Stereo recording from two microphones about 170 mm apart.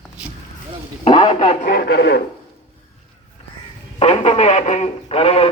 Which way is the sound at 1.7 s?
75° left (ahead or behind).